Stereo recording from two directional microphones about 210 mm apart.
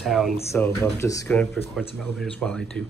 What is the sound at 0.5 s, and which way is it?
Speech, 10° left (ahead or behind).